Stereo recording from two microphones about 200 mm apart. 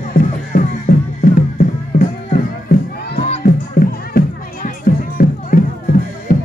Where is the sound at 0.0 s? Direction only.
45° left (ahead or behind).